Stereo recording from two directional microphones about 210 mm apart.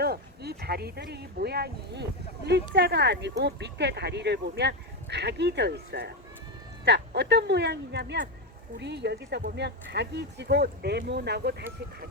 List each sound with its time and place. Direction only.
0.0 s speech: 50° right (ahead or behind)